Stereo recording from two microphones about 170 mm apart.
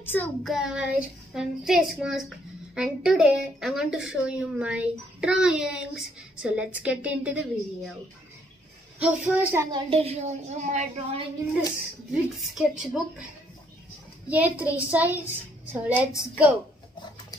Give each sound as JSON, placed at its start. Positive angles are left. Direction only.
{"t": 0.0, "sound": "a child's voice", "side_deg": 10}
{"t": 0.5, "sound": "a woman's voice", "side_deg": -5}
{"t": 9.0, "sound": "a woman's voice", "side_deg": -10}
{"t": 9.7, "sound": "a woman's voice", "side_deg": -35}
{"t": 12.1, "sound": "a woman's voice", "side_deg": -5}
{"t": 14.3, "sound": "a woman's voice", "side_deg": -10}